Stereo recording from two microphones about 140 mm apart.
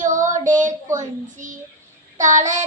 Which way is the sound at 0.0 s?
65° right (ahead or behind).